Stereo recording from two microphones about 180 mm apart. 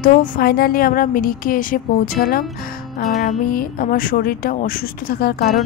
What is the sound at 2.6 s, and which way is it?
Music, 55° left (ahead or behind).